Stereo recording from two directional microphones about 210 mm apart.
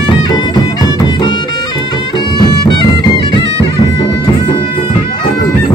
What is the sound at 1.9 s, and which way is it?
Music, 20° left (ahead or behind).